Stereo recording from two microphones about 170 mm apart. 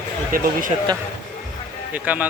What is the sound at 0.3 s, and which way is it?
Speech, 55° right (ahead or behind).